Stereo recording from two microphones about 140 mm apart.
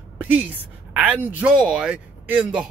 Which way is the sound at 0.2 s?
10° right (ahead or behind).